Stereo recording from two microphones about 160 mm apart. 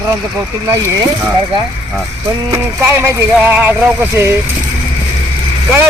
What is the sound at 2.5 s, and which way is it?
Speech, 15° right (ahead or behind).